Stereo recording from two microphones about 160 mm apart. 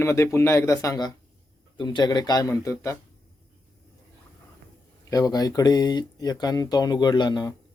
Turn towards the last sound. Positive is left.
turn(degrees=25)  # may be behind; listen again after turning